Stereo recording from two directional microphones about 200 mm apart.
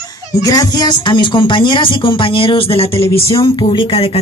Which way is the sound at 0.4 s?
20° left (ahead or behind).